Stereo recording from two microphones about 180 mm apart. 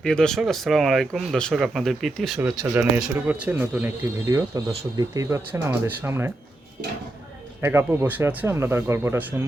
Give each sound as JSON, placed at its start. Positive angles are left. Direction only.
{"t": 0.0, "sound": "speech", "side_deg": 5}
{"t": 2.4, "sound": "speech", "side_deg": -10}
{"t": 7.6, "sound": "speech", "side_deg": -15}